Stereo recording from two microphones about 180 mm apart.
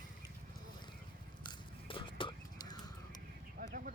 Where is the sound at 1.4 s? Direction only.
30° left (ahead or behind).